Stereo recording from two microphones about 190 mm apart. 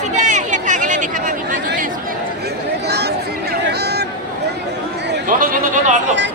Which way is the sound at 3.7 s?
60° right (ahead or behind).